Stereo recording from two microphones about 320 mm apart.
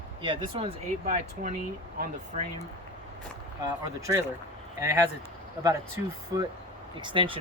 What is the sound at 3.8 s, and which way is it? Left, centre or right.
Speech, centre.